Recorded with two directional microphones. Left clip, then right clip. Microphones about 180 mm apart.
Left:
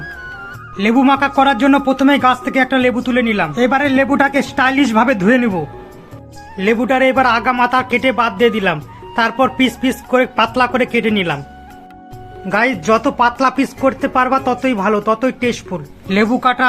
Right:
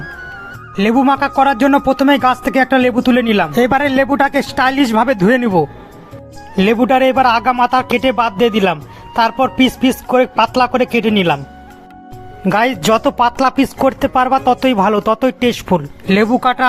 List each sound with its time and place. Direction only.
0.8 s speech: 40° right (ahead or behind)
12.5 s speech: 45° right (ahead or behind)